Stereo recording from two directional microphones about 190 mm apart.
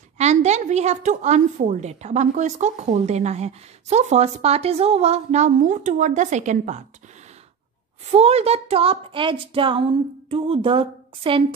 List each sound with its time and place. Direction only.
0.2 s a woman's voice: 35° right (ahead or behind)
8.1 s a child's voice: 35° right (ahead or behind)